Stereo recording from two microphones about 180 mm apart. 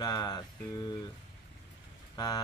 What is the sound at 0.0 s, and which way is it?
Music, 20° left (ahead or behind).